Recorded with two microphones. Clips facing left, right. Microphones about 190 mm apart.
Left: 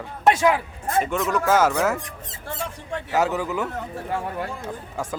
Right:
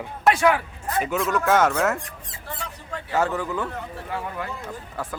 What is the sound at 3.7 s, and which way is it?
Speech, 50° left (ahead or behind).